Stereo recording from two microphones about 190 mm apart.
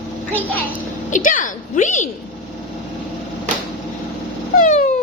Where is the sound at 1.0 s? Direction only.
45° left (ahead or behind).